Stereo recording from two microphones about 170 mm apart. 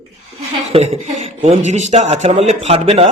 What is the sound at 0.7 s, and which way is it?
A man's voice, 35° right (ahead or behind).